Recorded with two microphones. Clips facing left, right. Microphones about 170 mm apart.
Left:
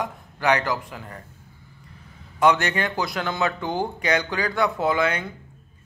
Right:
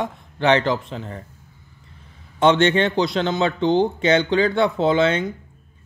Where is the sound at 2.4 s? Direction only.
25° right (ahead or behind).